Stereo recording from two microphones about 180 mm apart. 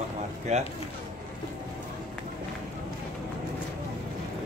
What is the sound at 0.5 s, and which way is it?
Speech, 35° right (ahead or behind).